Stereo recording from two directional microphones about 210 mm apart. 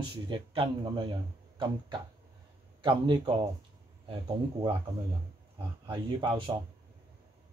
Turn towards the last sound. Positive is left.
turn(degrees=-20)  # may be behind; listen again after turning